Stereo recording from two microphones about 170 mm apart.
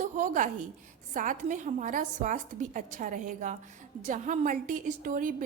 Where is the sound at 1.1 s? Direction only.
50° right (ahead or behind).